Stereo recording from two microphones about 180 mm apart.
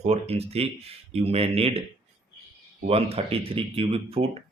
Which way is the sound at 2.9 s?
35° right (ahead or behind).